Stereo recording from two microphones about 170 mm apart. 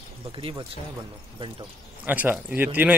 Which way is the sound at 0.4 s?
30° right (ahead or behind).